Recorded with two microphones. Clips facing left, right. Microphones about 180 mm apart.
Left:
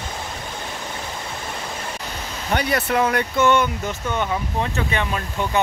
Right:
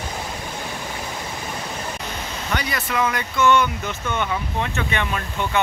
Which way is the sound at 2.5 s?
55° left (ahead or behind).